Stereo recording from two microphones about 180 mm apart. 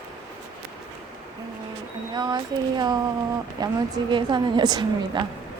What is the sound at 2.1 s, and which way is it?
A woman's voice, 25° right (ahead or behind).